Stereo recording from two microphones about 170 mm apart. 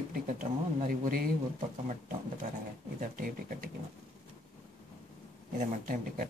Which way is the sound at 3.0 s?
55° right (ahead or behind).